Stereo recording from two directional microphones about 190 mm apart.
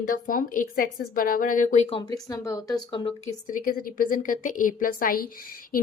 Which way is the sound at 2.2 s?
20° left (ahead or behind).